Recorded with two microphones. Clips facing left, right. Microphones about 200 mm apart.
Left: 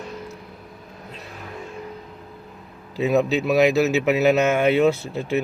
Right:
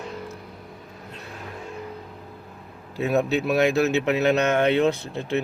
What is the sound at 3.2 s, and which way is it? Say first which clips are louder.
Speech: left 3 dB; 5° left (ahead or behind).